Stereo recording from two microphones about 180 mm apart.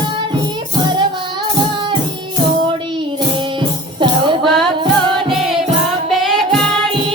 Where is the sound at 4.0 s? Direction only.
25° right (ahead or behind).